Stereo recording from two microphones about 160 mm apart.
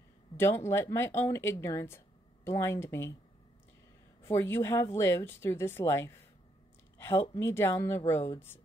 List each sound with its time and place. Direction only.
0.4 s speech: 15° left (ahead or behind)
4.2 s speech: 15° left (ahead or behind)